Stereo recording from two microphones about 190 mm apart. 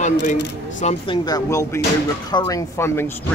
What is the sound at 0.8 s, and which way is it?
Speech, 35° left (ahead or behind).